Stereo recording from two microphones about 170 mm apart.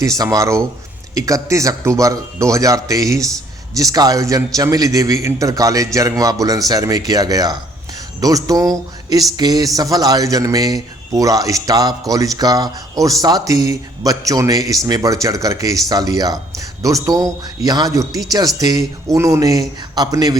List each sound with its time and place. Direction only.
0.0 s a man's voice: 20° right (ahead or behind)